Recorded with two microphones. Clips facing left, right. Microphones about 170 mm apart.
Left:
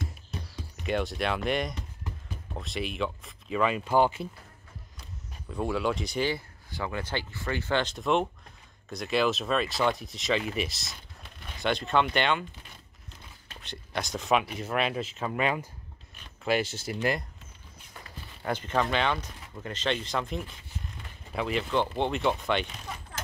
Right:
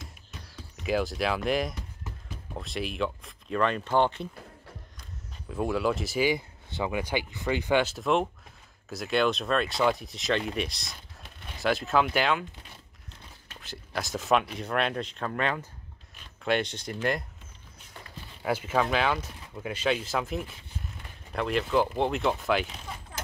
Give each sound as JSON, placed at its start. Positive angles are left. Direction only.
{"t": 0.8, "sound": "speech", "side_deg": 0}
{"t": 5.5, "sound": "speech", "side_deg": 0}
{"t": 6.3, "sound": "speech", "side_deg": -15}
{"t": 13.5, "sound": "speech", "side_deg": 0}
{"t": 18.4, "sound": "speech", "side_deg": -5}